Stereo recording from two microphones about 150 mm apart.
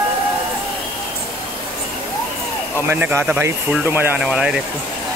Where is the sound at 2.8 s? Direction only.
15° right (ahead or behind).